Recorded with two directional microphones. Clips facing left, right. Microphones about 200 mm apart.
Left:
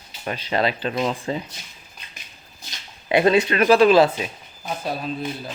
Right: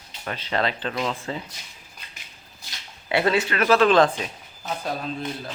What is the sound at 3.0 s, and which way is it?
Speech, 20° left (ahead or behind).